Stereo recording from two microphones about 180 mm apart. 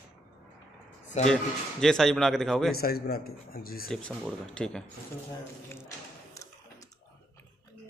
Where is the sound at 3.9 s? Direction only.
5° left (ahead or behind).